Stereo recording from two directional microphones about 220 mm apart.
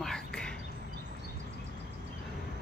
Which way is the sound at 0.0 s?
5° left (ahead or behind).